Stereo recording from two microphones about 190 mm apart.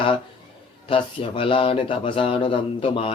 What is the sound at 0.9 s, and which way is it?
Speech, 25° left (ahead or behind).